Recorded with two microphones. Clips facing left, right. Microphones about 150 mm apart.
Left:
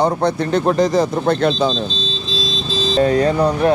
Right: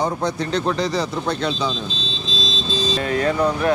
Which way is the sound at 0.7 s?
45° left (ahead or behind).